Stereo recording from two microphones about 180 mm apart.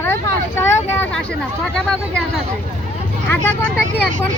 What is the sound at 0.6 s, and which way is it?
Speech, 10° left (ahead or behind).